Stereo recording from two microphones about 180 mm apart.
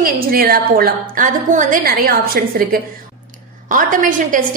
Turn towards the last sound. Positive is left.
turn(degrees=-45)  # may be behind; listen again after turning